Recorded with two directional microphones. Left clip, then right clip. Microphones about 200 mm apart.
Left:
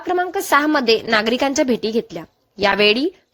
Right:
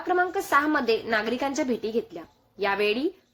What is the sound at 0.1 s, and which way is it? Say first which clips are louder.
A woman's voice: left 6 dB; 45° left (ahead or behind).